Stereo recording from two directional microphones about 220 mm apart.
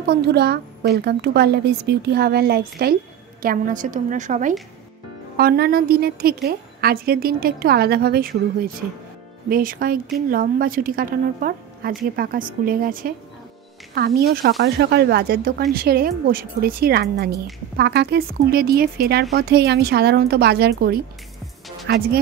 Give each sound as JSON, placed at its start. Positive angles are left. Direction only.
{"t": 0.0, "sound": "a woman's voice", "side_deg": -45}